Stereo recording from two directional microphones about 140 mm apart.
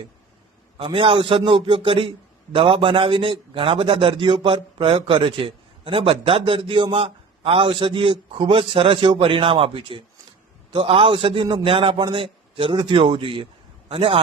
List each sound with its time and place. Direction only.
0.8 s a man's voice: 40° right (ahead or behind)